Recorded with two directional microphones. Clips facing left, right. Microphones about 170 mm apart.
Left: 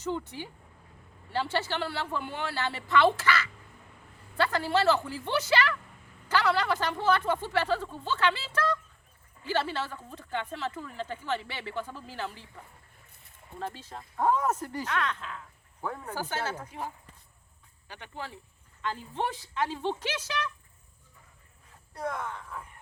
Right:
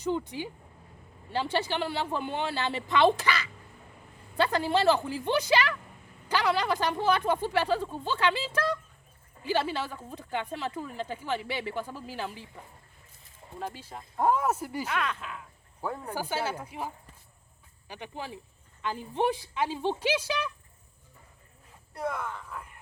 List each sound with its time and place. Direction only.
0.0 s speech: 15° right (ahead or behind)
21.9 s speech: 10° right (ahead or behind)